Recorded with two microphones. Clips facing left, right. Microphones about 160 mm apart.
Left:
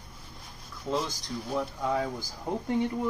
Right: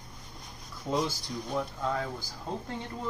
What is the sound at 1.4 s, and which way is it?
Speech, 10° left (ahead or behind).